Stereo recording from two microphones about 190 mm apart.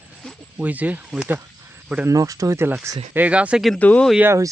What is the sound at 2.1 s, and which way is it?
Speech, 20° right (ahead or behind).